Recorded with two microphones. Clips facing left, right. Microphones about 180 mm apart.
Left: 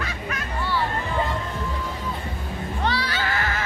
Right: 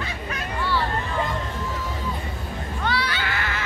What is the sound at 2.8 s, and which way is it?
Neigh, 35° left (ahead or behind).